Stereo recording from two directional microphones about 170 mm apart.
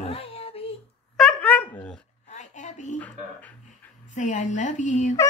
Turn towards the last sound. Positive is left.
turn(degrees=45)  # may be behind; listen again after turning